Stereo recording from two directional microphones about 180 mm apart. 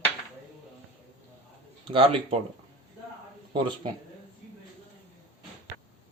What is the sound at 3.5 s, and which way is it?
Speech, 25° right (ahead or behind).